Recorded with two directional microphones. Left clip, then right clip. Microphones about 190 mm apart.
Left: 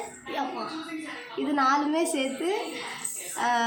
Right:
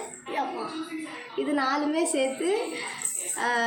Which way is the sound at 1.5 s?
15° left (ahead or behind).